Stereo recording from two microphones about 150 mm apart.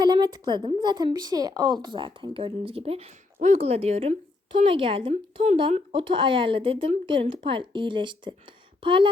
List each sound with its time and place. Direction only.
0.0 s speech: 30° right (ahead or behind)